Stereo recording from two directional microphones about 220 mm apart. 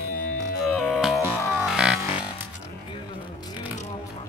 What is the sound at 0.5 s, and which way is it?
Music, centre (ahead or behind).